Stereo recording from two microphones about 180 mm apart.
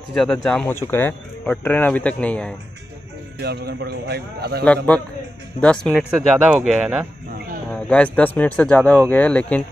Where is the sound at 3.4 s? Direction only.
65° right (ahead or behind).